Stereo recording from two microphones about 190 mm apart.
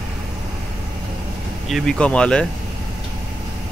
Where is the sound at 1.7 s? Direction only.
Centre (ahead or behind).